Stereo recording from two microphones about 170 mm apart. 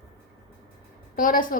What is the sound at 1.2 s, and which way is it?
Speech, 55° left (ahead or behind).